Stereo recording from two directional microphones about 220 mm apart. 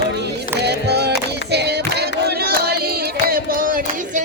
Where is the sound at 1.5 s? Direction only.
50° right (ahead or behind).